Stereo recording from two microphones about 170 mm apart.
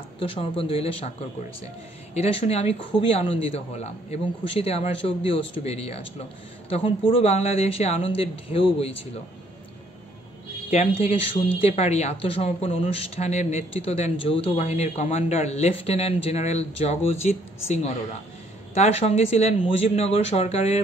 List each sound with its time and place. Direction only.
0.2 s speech: 30° left (ahead or behind)
2.1 s speech: 35° left (ahead or behind)
10.7 s speech: 35° left (ahead or behind)